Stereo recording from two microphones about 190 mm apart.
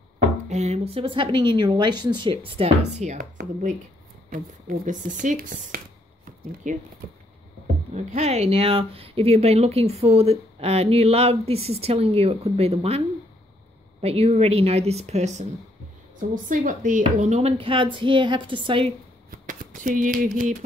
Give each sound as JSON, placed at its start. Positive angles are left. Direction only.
{"t": 0.5, "sound": "speech", "side_deg": -35}
{"t": 4.3, "sound": "speech", "side_deg": -45}
{"t": 6.7, "sound": "speech", "side_deg": -40}
{"t": 7.9, "sound": "speech", "side_deg": -40}
{"t": 14.0, "sound": "speech", "side_deg": -35}
{"t": 19.3, "sound": "a sound", "side_deg": -45}